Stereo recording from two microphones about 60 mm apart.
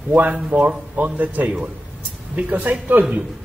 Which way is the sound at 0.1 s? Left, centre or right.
Right.